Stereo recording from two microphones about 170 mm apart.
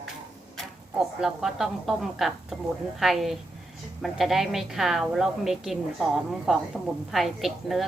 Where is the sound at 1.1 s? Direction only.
5° right (ahead or behind).